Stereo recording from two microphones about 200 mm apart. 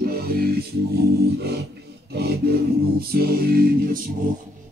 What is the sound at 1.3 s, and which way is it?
Music, 55° right (ahead or behind).